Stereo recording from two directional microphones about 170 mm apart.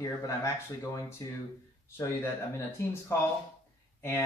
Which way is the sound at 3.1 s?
15° left (ahead or behind).